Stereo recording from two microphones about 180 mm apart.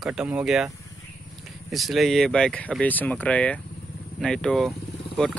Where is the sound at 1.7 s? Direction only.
Centre (ahead or behind).